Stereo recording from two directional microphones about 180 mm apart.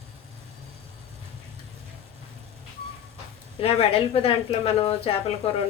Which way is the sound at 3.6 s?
30° left (ahead or behind).